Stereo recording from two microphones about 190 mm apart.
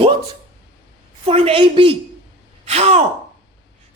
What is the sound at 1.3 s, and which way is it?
A man's voice, 30° right (ahead or behind).